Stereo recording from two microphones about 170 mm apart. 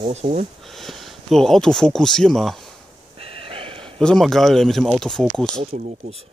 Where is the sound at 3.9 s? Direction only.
5° left (ahead or behind).